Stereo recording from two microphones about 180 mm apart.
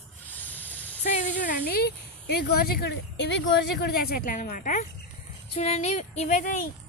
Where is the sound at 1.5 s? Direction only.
55° left (ahead or behind).